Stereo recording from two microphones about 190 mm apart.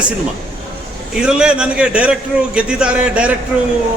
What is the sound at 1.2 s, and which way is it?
A man's voice, 5° right (ahead or behind).